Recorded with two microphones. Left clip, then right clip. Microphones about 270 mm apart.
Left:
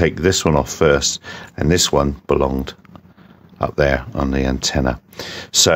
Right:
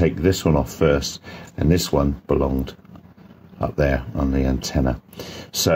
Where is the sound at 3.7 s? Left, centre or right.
Left.